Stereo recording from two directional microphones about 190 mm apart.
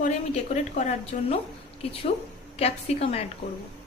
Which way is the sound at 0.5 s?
35° left (ahead or behind).